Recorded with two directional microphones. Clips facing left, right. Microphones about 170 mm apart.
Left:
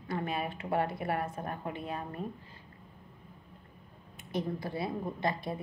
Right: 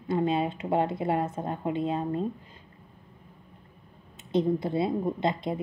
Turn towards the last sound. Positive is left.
turn(degrees=-20)  # may be behind; listen again after turning